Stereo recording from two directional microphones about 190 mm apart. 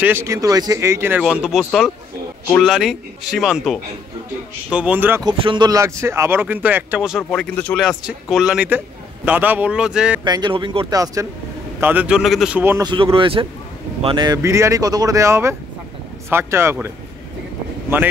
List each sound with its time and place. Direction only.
0.0 s a man's voice: 15° right (ahead or behind)
5.2 s speech: 25° right (ahead or behind); by 10.2 s 5° right (ahead or behind)
10.2 s speech: 25° right (ahead or behind)
11.8 s speech: 10° right (ahead or behind)
12.8 s speech: 25° right (ahead or behind)